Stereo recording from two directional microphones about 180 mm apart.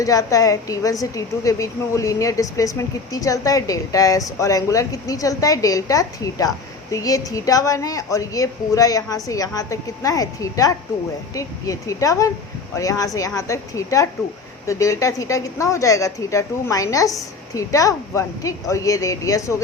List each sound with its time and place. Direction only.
0.0 s a woman's voice: 20° left (ahead or behind)